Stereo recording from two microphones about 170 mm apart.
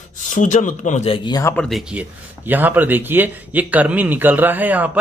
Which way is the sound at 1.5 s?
5° left (ahead or behind).